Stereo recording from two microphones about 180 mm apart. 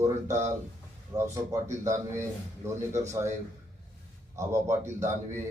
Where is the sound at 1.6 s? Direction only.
15° right (ahead or behind).